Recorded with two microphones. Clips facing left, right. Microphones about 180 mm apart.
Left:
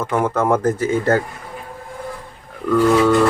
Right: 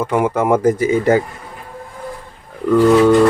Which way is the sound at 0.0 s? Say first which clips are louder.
Right 2 dB; 10° right (ahead or behind).